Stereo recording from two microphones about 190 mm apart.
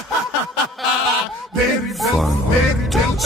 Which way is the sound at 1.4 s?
Centre (ahead or behind).